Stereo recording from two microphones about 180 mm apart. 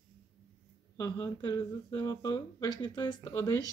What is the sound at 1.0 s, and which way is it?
Speech, 20° left (ahead or behind).